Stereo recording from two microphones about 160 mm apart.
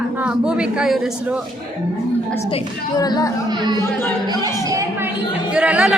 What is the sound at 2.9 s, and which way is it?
Speech, 25° left (ahead or behind).